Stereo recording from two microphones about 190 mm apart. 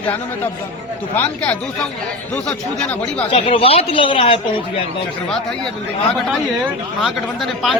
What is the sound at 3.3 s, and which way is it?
Speech, 30° left (ahead or behind).